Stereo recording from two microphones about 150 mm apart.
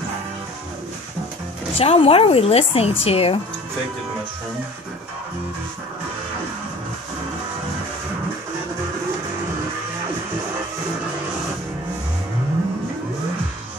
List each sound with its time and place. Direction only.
1.8 s a woman's voice: 40° left (ahead or behind)